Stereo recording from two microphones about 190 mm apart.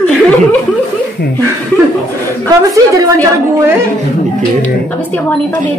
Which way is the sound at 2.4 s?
15° right (ahead or behind).